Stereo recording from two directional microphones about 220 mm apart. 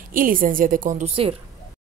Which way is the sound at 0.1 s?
40° right (ahead or behind).